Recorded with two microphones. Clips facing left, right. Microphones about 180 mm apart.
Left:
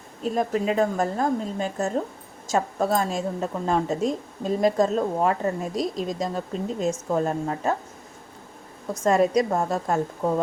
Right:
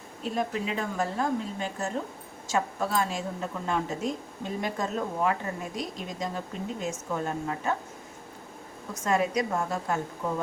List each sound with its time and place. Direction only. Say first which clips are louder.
0.2 s a woman's voice: left 6 dB; 40° left (ahead or behind)
9.0 s a woman's voice: left 6 dB; 35° left (ahead or behind)